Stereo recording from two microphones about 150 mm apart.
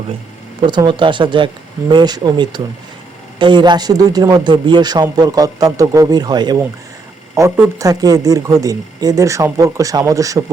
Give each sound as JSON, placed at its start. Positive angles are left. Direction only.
{"t": 0.6, "sound": "a man's voice", "side_deg": -30}